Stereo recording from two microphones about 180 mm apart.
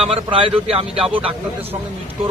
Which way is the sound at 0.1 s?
30° right (ahead or behind).